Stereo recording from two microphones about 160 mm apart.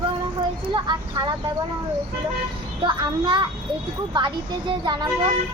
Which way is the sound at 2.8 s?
30° right (ahead or behind).